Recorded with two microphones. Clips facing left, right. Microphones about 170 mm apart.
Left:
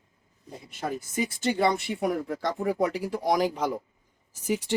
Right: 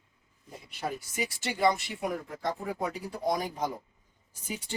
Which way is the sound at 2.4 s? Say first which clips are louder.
Left 6 dB; 90° left.